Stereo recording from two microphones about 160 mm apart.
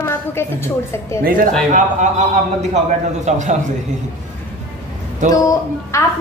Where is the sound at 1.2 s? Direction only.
60° right (ahead or behind).